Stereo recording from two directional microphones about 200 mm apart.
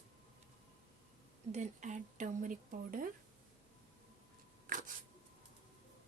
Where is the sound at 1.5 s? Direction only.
40° right (ahead or behind).